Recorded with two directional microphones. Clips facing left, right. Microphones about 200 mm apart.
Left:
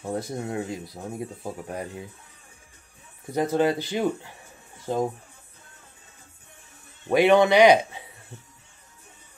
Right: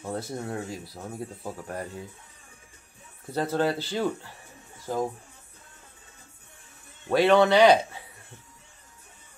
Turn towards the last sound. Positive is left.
turn(degrees=15)  # may be behind; listen again after turning